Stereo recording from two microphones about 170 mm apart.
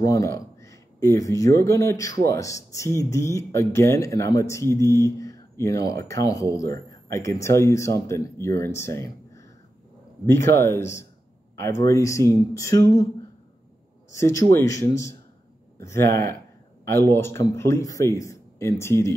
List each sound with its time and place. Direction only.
0.0 s speech: 20° left (ahead or behind)
14.1 s speech: 15° left (ahead or behind)